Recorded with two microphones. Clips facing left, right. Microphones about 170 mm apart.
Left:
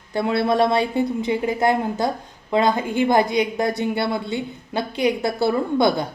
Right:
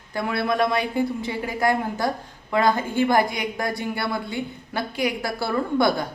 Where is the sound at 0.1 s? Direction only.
25° left (ahead or behind).